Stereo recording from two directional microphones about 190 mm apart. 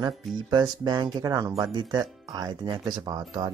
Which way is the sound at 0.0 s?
25° right (ahead or behind).